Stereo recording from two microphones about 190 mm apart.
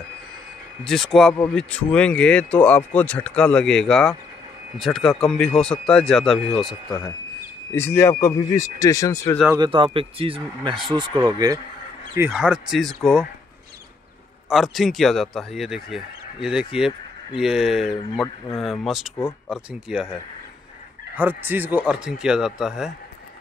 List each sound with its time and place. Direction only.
0.8 s speech: centre (ahead or behind)
7.7 s speech: 10° left (ahead or behind)
9.6 s speech: 25° right (ahead or behind)
12.2 s speech: 5° right (ahead or behind)
14.5 s speech: centre (ahead or behind)
19.1 s speech: 15° left (ahead or behind)
19.5 s speech: 5° right (ahead or behind)
21.2 s speech: 10° right (ahead or behind)